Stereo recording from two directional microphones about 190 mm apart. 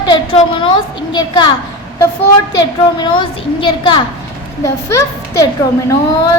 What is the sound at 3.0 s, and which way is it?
A woman's voice, 25° left (ahead or behind).